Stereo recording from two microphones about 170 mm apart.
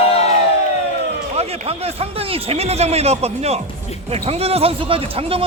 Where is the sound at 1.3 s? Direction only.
35° right (ahead or behind).